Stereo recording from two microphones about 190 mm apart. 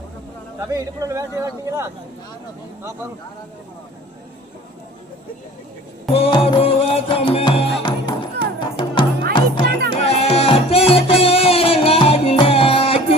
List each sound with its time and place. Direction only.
0.7 s a man's voice: 15° right (ahead or behind)
6.1 s music: 30° left (ahead or behind)